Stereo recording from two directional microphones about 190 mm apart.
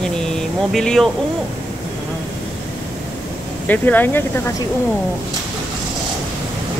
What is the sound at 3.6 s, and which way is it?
Speech, 10° left (ahead or behind).